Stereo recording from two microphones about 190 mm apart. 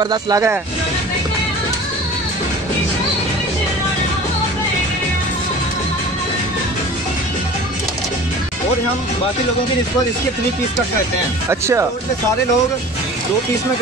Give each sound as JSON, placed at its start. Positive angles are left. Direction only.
{"t": 0.0, "sound": "speech", "side_deg": -20}
{"t": 11.6, "sound": "speech", "side_deg": -15}